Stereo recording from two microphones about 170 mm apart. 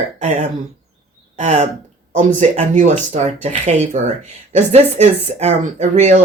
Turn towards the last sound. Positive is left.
turn(degrees=-40)  # may be behind; listen again after turning